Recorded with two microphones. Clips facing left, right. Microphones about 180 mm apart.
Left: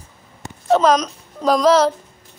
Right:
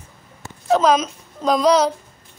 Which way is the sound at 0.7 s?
Centre (ahead or behind).